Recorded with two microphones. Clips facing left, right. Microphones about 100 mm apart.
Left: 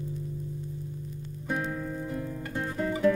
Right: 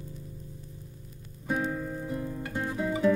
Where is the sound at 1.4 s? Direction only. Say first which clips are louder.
Right 1 dB; 5° right (ahead or behind).